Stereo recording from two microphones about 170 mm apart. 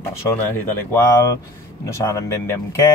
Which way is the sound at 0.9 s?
15° left (ahead or behind).